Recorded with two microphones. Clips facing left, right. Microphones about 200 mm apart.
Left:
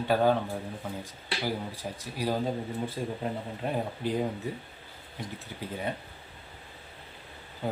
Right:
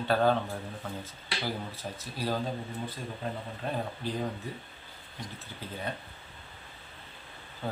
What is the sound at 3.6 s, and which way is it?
Speech, 15° left (ahead or behind).